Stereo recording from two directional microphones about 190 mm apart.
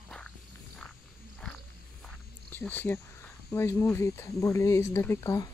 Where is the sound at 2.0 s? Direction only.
10° left (ahead or behind).